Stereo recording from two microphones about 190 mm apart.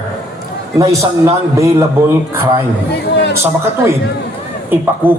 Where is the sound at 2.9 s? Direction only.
60° left (ahead or behind).